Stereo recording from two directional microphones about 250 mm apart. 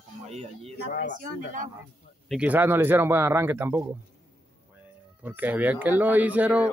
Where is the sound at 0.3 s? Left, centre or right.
Right.